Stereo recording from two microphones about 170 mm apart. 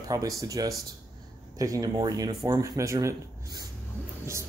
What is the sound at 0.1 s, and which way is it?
Speech, 20° right (ahead or behind).